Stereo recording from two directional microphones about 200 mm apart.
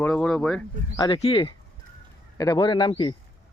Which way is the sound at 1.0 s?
25° left (ahead or behind).